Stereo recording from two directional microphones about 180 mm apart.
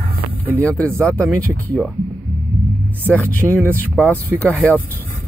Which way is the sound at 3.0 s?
10° left (ahead or behind).